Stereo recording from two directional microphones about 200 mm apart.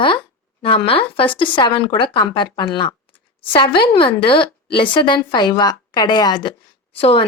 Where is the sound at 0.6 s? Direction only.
25° left (ahead or behind).